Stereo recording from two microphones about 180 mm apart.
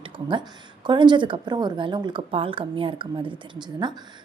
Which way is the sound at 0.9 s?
25° right (ahead or behind).